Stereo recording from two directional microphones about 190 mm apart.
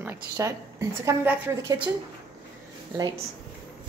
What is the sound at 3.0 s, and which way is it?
Speech, 25° right (ahead or behind).